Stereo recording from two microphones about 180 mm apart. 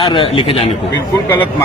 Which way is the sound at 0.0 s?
25° left (ahead or behind).